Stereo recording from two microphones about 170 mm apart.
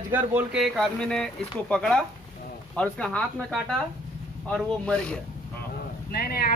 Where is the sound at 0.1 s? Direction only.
5° right (ahead or behind).